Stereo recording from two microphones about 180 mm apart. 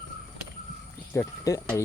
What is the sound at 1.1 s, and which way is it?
Speech, 15° left (ahead or behind).